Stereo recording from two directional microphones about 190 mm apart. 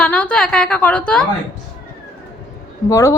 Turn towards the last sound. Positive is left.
turn(degrees=15)  # may be behind; listen again after turning